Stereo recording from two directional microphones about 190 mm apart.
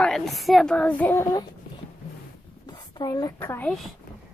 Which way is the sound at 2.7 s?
20° left (ahead or behind).